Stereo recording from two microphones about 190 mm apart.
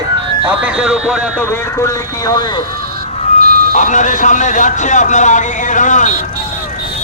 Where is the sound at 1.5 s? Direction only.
15° left (ahead or behind).